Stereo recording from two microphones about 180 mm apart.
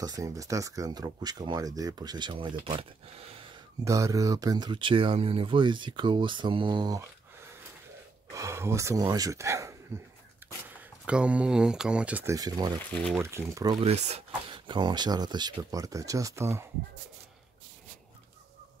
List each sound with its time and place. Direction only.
0.0 s speech: 20° right (ahead or behind)
3.8 s speech: 15° right (ahead or behind)
8.3 s speech: 15° right (ahead or behind)
10.4 s a sound: 10° right (ahead or behind)
11.1 s speech: 5° right (ahead or behind)
13.7 s speech: 35° right (ahead or behind)
14.5 s speech: 25° right (ahead or behind)